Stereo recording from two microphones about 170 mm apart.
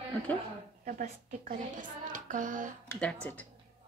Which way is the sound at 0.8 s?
55° right (ahead or behind).